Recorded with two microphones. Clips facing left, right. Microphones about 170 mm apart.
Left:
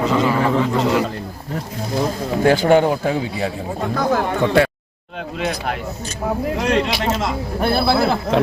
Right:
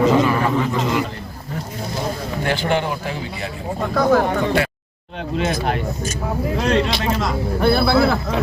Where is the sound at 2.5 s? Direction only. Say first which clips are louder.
Left 7 dB; 45° left (ahead or behind).